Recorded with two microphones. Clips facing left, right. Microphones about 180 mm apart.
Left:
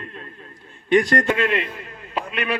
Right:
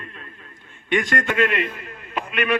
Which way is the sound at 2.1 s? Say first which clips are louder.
Right 1 dB; 30° left (ahead or behind).